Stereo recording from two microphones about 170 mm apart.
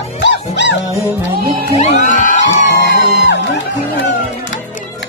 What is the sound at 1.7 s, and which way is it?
Music, 50° left (ahead or behind).